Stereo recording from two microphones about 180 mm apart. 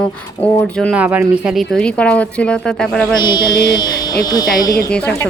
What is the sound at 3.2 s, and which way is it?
Mantra, 25° left (ahead or behind).